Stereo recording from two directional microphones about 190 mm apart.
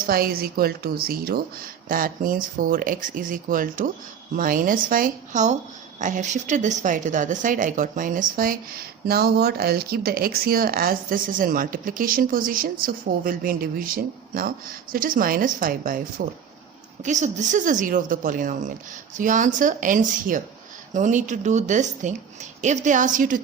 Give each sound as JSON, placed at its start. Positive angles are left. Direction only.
{"t": 0.1, "sound": "a woman's voice", "side_deg": -50}